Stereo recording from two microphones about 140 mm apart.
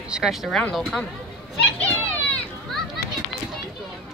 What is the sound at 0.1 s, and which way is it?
Speech, 5° right (ahead or behind).